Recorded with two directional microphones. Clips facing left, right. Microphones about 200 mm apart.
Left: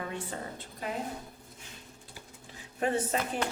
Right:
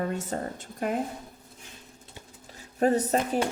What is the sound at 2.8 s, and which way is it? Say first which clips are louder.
Speech: right 6 dB; 40° right (ahead or behind).